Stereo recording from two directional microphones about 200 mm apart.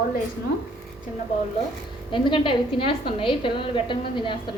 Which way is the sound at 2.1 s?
25° left (ahead or behind).